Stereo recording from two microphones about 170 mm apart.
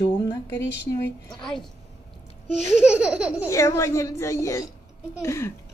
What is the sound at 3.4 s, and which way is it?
Speech, 15° left (ahead or behind).